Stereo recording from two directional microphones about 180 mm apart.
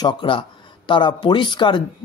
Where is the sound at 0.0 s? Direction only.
25° left (ahead or behind).